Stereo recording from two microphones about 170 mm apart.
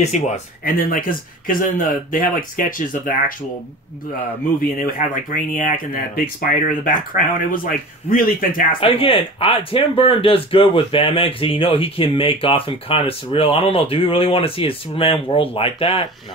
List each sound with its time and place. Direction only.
0.0 s speech: 45° left (ahead or behind)
4.8 s speech: 55° left (ahead or behind)
8.7 s speech: 30° left (ahead or behind)